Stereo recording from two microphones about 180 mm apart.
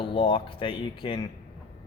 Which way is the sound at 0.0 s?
30° left (ahead or behind).